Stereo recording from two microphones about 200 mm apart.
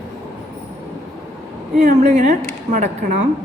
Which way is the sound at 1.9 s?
35° right (ahead or behind).